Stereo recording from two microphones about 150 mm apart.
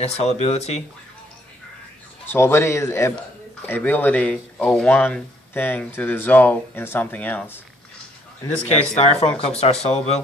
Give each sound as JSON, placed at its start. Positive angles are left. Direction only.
{"t": 0.0, "sound": "speech", "side_deg": 45}
{"t": 2.2, "sound": "speech", "side_deg": 15}
{"t": 8.9, "sound": "speech", "side_deg": 45}